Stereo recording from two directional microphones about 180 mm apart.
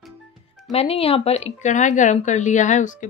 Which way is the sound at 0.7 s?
30° left (ahead or behind).